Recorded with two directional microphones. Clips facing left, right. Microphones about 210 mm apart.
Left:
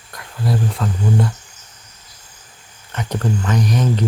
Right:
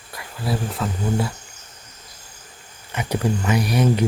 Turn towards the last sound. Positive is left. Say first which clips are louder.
# even
turn(degrees=-10)  # may be behind; listen again after turning